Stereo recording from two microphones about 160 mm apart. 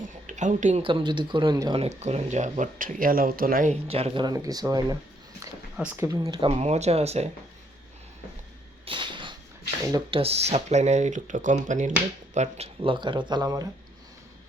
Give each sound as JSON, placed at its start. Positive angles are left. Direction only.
{"t": 0.3, "sound": "speech", "side_deg": -50}
{"t": 0.8, "sound": "speech", "side_deg": -35}
{"t": 1.8, "sound": "speech", "side_deg": -45}
{"t": 3.7, "sound": "speech", "side_deg": -40}
{"t": 5.7, "sound": "speech", "side_deg": -10}
{"t": 6.2, "sound": "speech", "side_deg": -35}
{"t": 8.8, "sound": "a sound", "side_deg": -30}
{"t": 9.9, "sound": "speech", "side_deg": -35}